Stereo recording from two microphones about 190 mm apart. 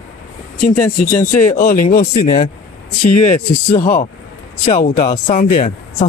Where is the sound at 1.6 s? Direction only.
45° left (ahead or behind).